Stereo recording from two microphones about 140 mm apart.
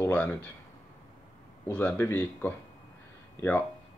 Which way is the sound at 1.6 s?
15° left (ahead or behind).